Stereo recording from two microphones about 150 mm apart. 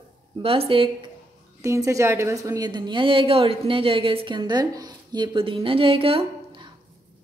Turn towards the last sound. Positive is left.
turn(degrees=-35)  # may be behind; listen again after turning